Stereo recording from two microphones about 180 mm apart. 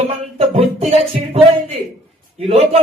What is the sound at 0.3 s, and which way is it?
Speech, 35° right (ahead or behind).